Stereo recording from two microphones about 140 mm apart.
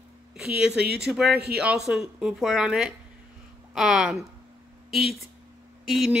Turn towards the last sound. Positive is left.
turn(degrees=0)  # may be behind; listen again after turning